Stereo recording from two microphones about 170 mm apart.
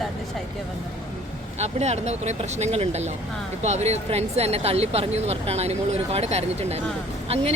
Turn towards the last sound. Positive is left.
turn(degrees=-35)  # may be behind; listen again after turning